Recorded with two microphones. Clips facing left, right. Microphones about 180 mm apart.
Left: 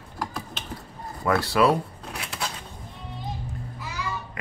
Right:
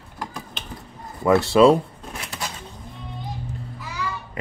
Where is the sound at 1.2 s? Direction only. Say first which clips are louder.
Right 7 dB; 25° right (ahead or behind).